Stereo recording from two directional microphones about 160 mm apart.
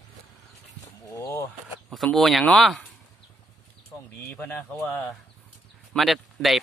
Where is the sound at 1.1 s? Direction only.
15° left (ahead or behind).